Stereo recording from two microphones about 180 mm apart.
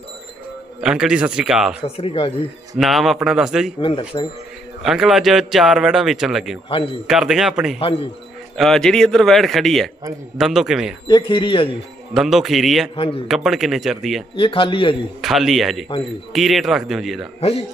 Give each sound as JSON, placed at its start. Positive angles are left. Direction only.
{"t": 0.7, "sound": "a man's voice", "side_deg": -5}
{"t": 2.0, "sound": "speech", "side_deg": 30}
{"t": 2.8, "sound": "a man's voice", "side_deg": 0}
{"t": 4.1, "sound": "speech", "side_deg": 25}
{"t": 4.8, "sound": "a man's voice", "side_deg": 0}
{"t": 11.1, "sound": "speech", "side_deg": 25}
{"t": 12.1, "sound": "a man's voice", "side_deg": 0}
{"t": 12.9, "sound": "speech", "side_deg": 30}
{"t": 13.3, "sound": "a man's voice", "side_deg": 0}
{"t": 14.3, "sound": "speech", "side_deg": 30}
{"t": 15.2, "sound": "a man's voice", "side_deg": 0}
{"t": 17.4, "sound": "speech", "side_deg": 35}